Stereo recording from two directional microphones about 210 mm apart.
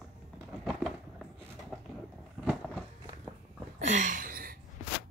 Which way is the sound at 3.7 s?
35° right (ahead or behind).